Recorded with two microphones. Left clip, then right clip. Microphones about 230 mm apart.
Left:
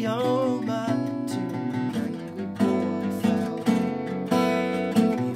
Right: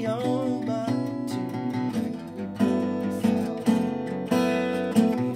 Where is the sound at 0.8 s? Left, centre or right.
Right.